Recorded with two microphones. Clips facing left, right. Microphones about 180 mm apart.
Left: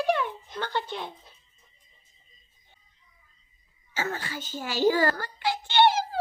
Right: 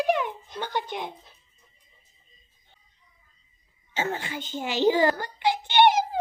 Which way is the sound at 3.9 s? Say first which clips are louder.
Right 3 dB; 20° right (ahead or behind).